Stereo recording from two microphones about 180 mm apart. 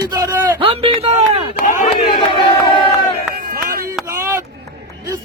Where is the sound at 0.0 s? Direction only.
15° right (ahead or behind).